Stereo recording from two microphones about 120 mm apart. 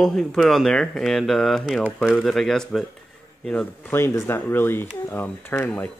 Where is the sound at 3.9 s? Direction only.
20° left (ahead or behind).